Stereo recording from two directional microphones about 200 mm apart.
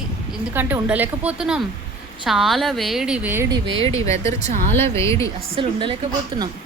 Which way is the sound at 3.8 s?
15° left (ahead or behind).